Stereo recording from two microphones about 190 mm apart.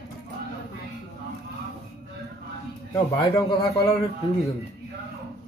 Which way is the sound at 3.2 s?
20° left (ahead or behind).